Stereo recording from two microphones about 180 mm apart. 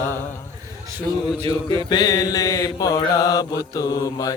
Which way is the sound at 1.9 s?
20° left (ahead or behind).